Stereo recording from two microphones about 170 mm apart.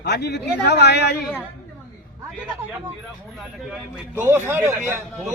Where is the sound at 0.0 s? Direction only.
85° left.